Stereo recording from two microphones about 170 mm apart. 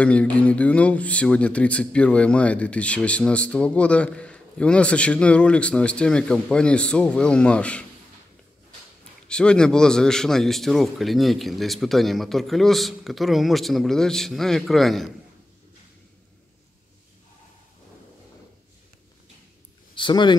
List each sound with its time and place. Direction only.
0.0 s speech: 5° left (ahead or behind)
9.3 s a man's voice: 5° left (ahead or behind)
20.0 s speech: 25° left (ahead or behind)